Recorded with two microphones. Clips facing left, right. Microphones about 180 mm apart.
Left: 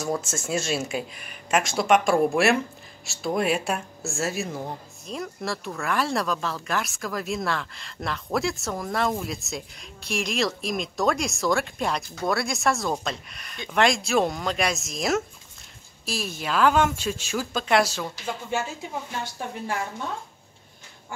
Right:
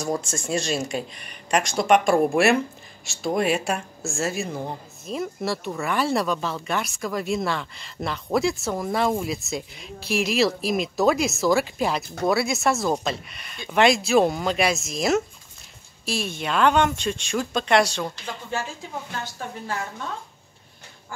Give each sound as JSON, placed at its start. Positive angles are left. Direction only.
{"t": 0.2, "sound": "a woman's voice", "side_deg": 5}